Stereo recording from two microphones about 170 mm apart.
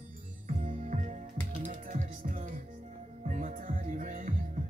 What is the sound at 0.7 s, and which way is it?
Music, 45° right (ahead or behind).